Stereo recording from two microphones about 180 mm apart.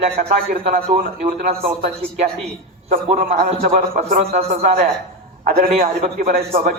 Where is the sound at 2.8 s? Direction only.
45° right (ahead or behind).